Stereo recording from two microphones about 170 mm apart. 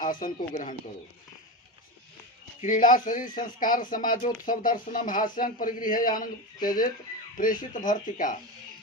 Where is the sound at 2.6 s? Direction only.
50° left (ahead or behind).